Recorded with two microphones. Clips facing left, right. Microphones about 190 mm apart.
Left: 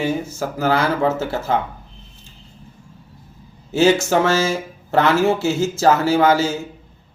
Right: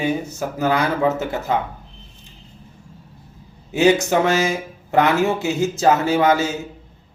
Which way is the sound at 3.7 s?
15° right (ahead or behind).